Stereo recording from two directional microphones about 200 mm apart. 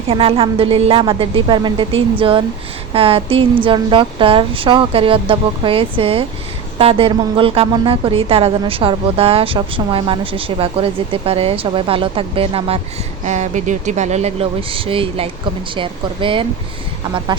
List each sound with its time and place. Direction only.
0.1 s a woman's voice: 30° right (ahead or behind)